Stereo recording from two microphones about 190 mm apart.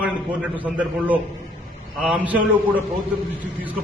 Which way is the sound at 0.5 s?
10° right (ahead or behind).